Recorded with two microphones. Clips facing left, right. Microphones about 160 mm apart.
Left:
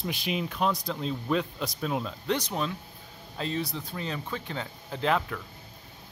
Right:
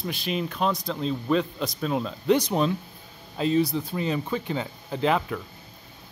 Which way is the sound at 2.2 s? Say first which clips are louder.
Right 11 dB; 10° right (ahead or behind).